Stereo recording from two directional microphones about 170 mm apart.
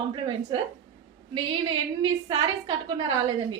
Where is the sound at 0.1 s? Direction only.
30° right (ahead or behind).